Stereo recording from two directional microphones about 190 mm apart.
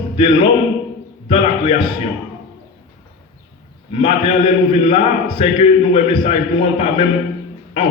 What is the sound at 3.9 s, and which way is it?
A man's voice, 30° left (ahead or behind).